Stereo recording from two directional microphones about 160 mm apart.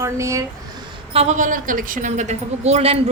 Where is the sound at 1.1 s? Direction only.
40° right (ahead or behind).